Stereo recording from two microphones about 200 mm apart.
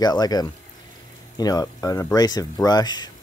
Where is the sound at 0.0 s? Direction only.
20° left (ahead or behind).